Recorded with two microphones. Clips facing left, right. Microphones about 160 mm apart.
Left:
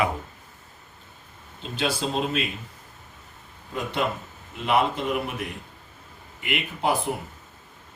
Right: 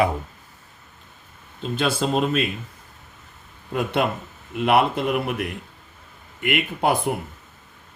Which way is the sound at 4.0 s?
60° right (ahead or behind).